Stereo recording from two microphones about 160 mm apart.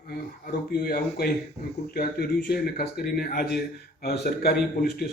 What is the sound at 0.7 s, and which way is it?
A man's voice, 65° left (ahead or behind).